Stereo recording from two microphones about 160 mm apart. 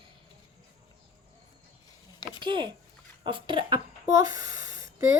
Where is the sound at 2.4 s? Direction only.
30° right (ahead or behind).